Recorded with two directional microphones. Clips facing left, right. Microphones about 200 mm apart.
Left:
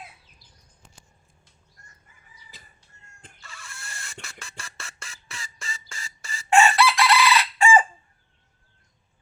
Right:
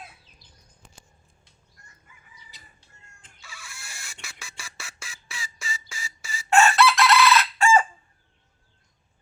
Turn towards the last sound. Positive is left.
turn(degrees=15)  # may be behind; listen again after turning